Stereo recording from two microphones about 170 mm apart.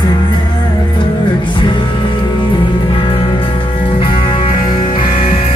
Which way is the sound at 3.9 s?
30° left (ahead or behind).